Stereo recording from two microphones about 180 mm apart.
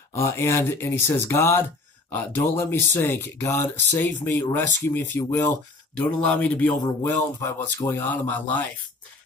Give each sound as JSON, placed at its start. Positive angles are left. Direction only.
{"t": 0.1, "sound": "speech", "side_deg": 15}